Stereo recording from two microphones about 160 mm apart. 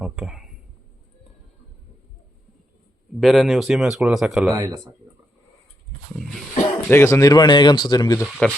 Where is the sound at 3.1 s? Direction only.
Centre (ahead or behind).